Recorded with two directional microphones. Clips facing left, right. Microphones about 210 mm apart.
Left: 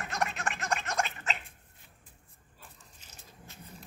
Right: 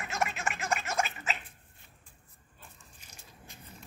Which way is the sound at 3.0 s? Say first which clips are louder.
Left 1 dB; 10° right (ahead or behind).